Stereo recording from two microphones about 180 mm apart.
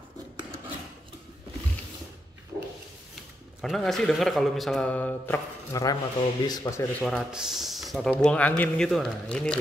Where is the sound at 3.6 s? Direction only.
Centre (ahead or behind); by 6.8 s 20° left (ahead or behind).